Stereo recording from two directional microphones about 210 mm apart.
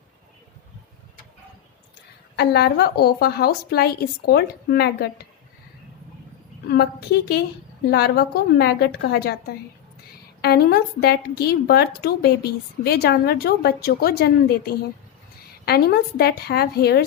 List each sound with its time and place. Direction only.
2.3 s a woman's voice: 50° left (ahead or behind)
6.7 s a woman's voice: 50° left (ahead or behind)
10.4 s a woman's voice: 50° left (ahead or behind)